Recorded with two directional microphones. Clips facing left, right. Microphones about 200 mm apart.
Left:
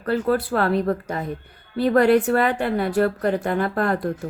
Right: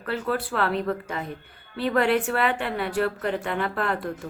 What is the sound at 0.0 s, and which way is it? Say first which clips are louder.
A woman's voice: left 6 dB; 40° left (ahead or behind).